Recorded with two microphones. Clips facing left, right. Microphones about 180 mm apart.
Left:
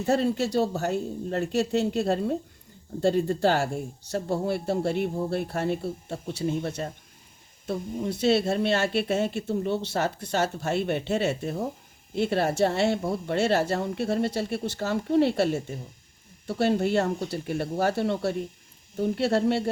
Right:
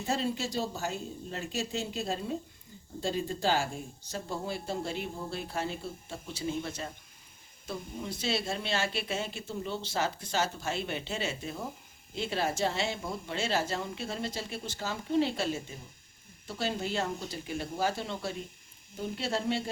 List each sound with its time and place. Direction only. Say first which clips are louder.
0.0 s speech: left 8 dB; 65° left (ahead or behind)